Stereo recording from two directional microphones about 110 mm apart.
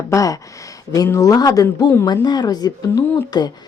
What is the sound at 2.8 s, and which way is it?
Speech, 20° left (ahead or behind).